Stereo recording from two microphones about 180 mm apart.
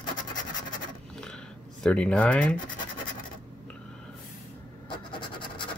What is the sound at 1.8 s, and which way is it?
Speech, 5° left (ahead or behind).